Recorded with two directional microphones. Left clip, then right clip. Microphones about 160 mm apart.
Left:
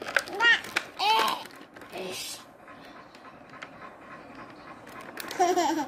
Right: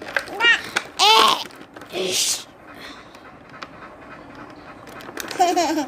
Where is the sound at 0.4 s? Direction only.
20° right (ahead or behind).